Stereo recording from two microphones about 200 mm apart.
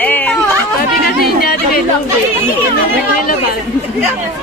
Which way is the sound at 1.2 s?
50° left (ahead or behind).